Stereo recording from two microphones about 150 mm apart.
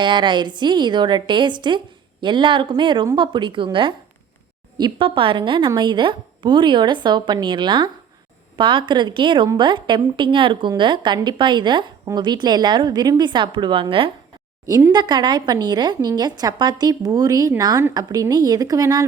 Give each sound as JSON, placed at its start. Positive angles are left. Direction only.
{"t": 0.0, "sound": "a woman's voice", "side_deg": -30}
{"t": 14.7, "sound": "a woman's voice", "side_deg": -15}
{"t": 14.9, "sound": "a woman's voice", "side_deg": -30}